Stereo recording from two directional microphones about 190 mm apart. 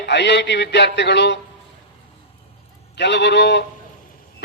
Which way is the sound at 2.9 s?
65° left (ahead or behind).